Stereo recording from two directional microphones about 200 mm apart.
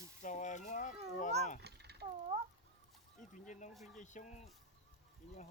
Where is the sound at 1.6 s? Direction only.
55° right (ahead or behind).